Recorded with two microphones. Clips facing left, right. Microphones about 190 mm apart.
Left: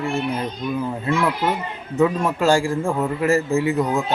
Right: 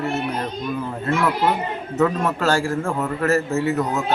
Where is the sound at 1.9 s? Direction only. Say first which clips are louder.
Left 2 dB; 10° left (ahead or behind).